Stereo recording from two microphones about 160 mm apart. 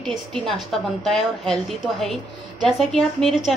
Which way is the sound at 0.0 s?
5° left (ahead or behind).